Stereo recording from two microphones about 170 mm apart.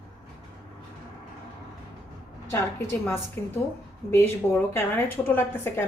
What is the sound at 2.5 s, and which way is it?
A woman's voice, 15° left (ahead or behind).